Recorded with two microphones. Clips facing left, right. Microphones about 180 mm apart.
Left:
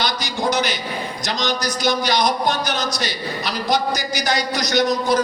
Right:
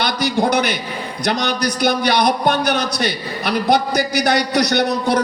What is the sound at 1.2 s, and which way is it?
A man's voice, 60° right (ahead or behind).